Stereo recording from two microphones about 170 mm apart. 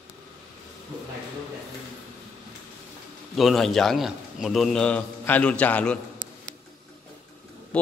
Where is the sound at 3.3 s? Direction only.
Centre (ahead or behind).